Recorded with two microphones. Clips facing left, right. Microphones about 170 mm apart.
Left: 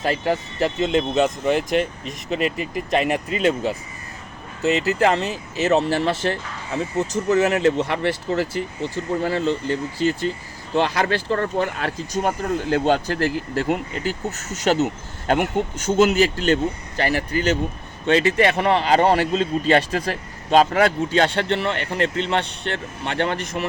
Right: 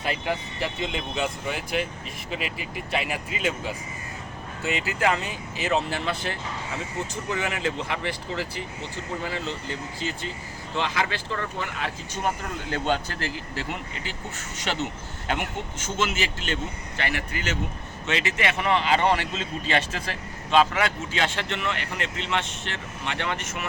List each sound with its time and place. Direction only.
0.0 s speech: 40° left (ahead or behind)